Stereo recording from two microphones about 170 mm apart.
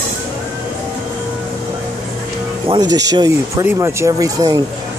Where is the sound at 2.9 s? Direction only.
25° right (ahead or behind).